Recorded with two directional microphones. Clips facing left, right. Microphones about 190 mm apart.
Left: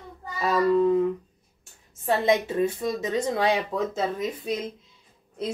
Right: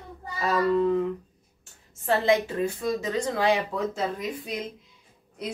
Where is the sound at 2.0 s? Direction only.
20° left (ahead or behind).